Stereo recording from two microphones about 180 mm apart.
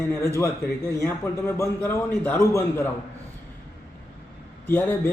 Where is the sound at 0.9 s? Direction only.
15° left (ahead or behind).